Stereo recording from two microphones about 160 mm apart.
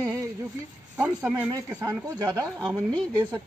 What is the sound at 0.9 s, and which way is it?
A woman's voice, 10° right (ahead or behind).